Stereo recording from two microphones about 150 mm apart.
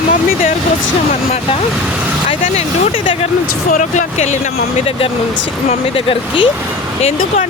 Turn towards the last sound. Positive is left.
turn(degrees=35)  # may be behind; listen again after turning